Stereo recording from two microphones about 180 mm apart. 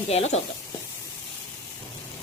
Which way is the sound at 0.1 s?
35° left (ahead or behind).